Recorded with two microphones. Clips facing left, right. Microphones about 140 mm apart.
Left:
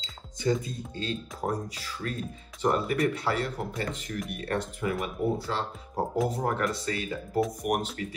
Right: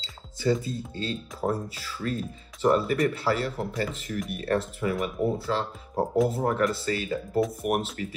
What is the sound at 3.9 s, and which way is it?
Speech, 30° right (ahead or behind).